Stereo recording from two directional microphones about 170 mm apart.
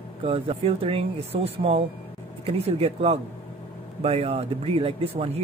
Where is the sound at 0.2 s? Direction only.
35° right (ahead or behind).